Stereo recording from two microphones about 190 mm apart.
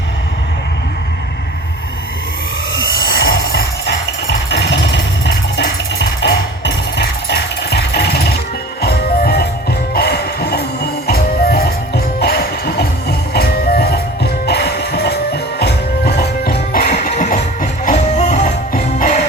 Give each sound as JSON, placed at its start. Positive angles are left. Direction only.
{"t": 3.1, "sound": "music", "side_deg": 65}
{"t": 17.2, "sound": "music", "side_deg": 40}